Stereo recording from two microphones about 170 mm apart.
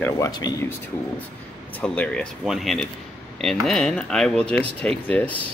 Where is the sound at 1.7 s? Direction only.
5° left (ahead or behind).